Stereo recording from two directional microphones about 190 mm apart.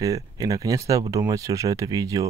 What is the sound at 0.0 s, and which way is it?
Speech, 20° right (ahead or behind).